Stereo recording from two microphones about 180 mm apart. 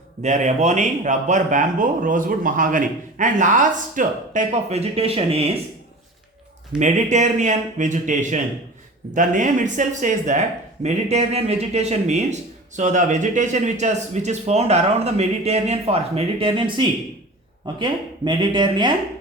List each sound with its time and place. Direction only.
0.2 s speech: 40° right (ahead or behind)
6.7 s a man's voice: 40° right (ahead or behind); by 18.9 s 25° right (ahead or behind)